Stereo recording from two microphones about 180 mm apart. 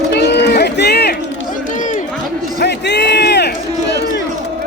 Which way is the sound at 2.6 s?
70° left (ahead or behind).